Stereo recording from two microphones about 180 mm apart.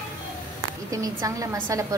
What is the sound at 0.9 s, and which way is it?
Speech, 20° right (ahead or behind).